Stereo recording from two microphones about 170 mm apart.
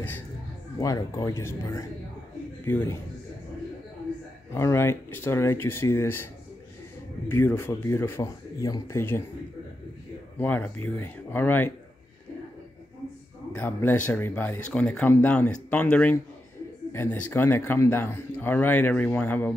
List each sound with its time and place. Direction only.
0.7 s speech: 20° left (ahead or behind)
4.6 s speech: 15° left (ahead or behind)
7.2 s speech: 15° left (ahead or behind)
10.4 s speech: 10° left (ahead or behind)
13.6 s speech: 10° left (ahead or behind)